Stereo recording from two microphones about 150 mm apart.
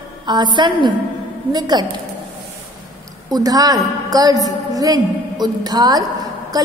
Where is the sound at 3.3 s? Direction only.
25° right (ahead or behind).